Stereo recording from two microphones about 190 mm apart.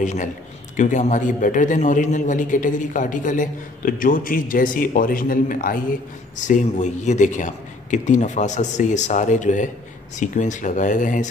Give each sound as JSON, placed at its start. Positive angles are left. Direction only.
{"t": 0.0, "sound": "a man's voice", "side_deg": 40}